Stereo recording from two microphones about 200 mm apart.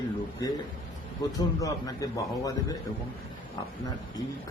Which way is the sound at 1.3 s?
15° left (ahead or behind).